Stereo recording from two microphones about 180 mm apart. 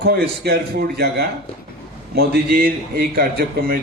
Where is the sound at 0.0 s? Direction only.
65° right (ahead or behind).